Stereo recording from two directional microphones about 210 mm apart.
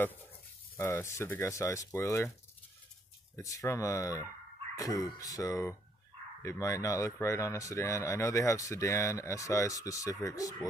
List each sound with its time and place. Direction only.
0.7 s speech: 10° left (ahead or behind)
3.3 s speech: 15° left (ahead or behind)